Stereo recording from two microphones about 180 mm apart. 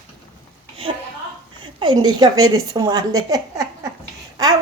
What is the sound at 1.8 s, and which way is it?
Speech, 25° right (ahead or behind).